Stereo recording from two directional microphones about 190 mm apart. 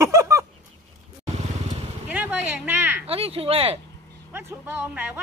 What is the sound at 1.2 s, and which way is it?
Vehicle, 35° right (ahead or behind).